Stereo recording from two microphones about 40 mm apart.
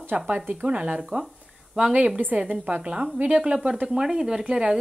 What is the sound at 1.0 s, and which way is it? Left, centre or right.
Speech, centre.